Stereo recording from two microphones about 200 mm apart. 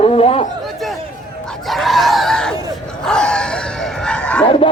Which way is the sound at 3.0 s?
5° left (ahead or behind).